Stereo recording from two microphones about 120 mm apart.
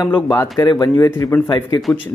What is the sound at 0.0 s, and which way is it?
Speech, 30° left (ahead or behind).